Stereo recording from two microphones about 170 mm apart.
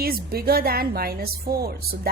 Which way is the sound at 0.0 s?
60° right (ahead or behind).